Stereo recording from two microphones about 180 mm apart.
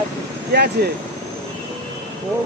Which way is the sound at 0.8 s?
65° right (ahead or behind).